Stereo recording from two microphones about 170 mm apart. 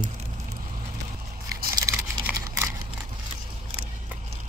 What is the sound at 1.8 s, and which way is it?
Typing, 20° right (ahead or behind).